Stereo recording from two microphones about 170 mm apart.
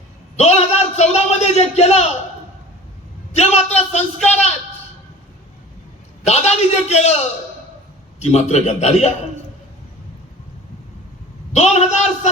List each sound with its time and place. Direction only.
0.3 s a sound: 40° left (ahead or behind)
3.3 s a man's voice: 40° left (ahead or behind)
6.2 s a man's voice: 40° left (ahead or behind)
11.5 s a man's voice: 40° left (ahead or behind)